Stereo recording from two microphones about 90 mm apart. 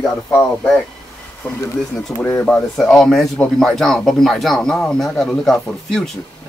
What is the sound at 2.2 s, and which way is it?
Speech, 20° left (ahead or behind).